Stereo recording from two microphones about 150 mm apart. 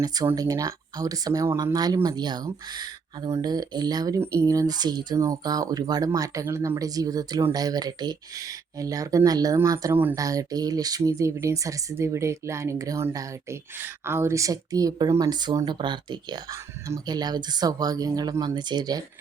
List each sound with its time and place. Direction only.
0.3 s speech: 25° right (ahead or behind)
10.2 s speech: 25° right (ahead or behind)